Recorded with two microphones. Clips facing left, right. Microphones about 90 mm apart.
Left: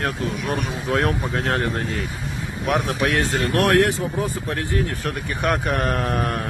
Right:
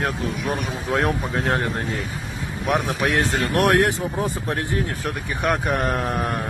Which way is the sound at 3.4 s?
20° right (ahead or behind).